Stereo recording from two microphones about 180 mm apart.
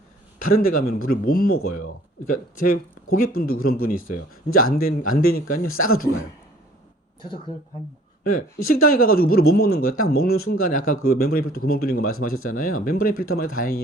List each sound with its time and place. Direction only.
0.5 s speech: 55° left (ahead or behind)
3.1 s speech: 55° left (ahead or behind)
8.4 s speech: 55° left (ahead or behind)